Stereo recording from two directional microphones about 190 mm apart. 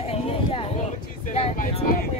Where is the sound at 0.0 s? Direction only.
30° left (ahead or behind).